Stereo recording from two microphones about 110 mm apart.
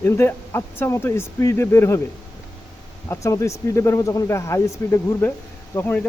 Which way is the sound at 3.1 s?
25° left (ahead or behind).